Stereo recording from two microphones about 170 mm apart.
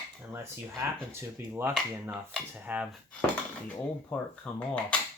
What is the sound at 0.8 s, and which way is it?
Speech, 15° right (ahead or behind).